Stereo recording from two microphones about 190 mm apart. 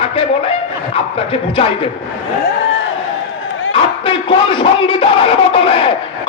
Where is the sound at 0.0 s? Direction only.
30° left (ahead or behind).